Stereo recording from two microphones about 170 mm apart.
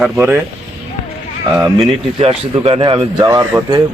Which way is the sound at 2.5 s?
30° right (ahead or behind).